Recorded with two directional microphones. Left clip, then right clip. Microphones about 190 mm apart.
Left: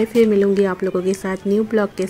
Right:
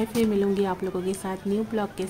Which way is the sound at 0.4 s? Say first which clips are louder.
Left 8 dB; 20° left (ahead or behind).